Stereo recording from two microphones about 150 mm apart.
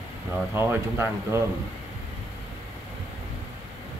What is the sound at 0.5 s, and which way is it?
Speech, 15° right (ahead or behind).